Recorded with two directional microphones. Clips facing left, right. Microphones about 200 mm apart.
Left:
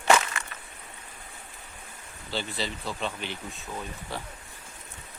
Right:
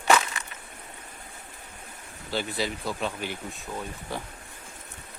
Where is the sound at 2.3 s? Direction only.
10° right (ahead or behind).